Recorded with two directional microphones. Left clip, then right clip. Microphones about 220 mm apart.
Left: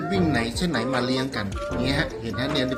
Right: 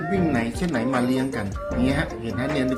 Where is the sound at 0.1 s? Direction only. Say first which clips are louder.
Even; 15° right (ahead or behind).